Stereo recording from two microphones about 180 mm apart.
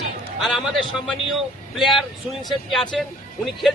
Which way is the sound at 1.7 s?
Centre (ahead or behind).